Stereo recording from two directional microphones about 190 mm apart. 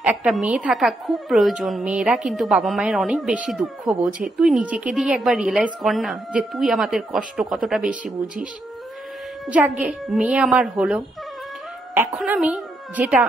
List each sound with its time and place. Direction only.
0.0 s a woman's voice: 5° right (ahead or behind)
9.5 s a woman's voice: 5° right (ahead or behind)